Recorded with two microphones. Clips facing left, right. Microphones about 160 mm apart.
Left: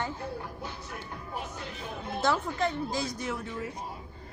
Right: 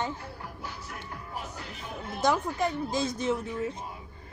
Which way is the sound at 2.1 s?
15° right (ahead or behind).